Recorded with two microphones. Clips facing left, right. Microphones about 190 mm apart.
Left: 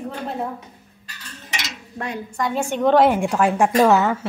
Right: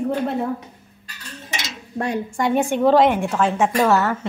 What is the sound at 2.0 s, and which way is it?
Speech, 30° right (ahead or behind).